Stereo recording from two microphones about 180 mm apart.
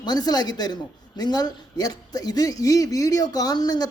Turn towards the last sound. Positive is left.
turn(degrees=20)  # may be behind; listen again after turning